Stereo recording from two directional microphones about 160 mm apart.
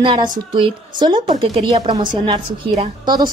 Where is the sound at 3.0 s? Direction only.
25° right (ahead or behind).